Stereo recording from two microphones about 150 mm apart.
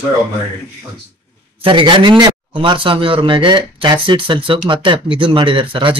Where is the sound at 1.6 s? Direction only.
35° right (ahead or behind).